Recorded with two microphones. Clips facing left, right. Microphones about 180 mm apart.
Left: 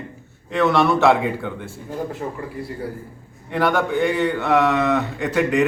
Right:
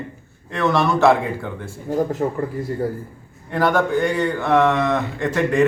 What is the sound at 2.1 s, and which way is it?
Speech, 45° right (ahead or behind).